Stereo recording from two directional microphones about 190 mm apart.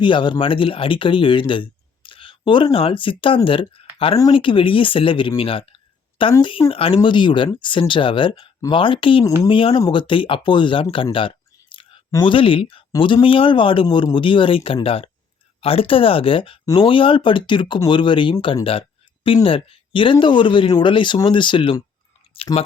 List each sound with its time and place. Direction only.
0.0 s speech: 25° left (ahead or behind)
22.3 s chewing: 30° left (ahead or behind)